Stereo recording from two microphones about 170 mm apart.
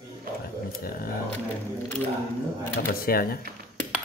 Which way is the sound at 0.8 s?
60° left (ahead or behind).